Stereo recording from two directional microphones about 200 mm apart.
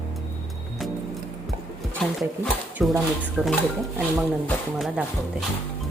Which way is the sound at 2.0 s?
5° left (ahead or behind).